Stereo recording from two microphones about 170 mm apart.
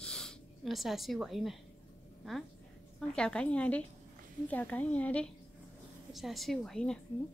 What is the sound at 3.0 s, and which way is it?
A woman's voice, 5° left (ahead or behind).